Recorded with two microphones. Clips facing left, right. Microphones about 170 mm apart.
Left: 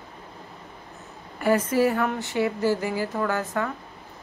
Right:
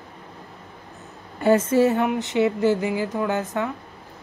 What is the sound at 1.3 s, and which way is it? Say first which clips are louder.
Speech: right 4 dB; 25° right (ahead or behind).